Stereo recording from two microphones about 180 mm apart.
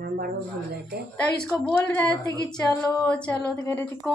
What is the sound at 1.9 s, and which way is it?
A woman's voice, 15° left (ahead or behind).